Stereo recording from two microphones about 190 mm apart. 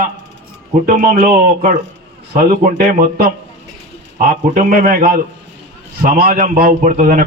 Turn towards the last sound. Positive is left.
turn(degrees=-45)  # may be behind; listen again after turning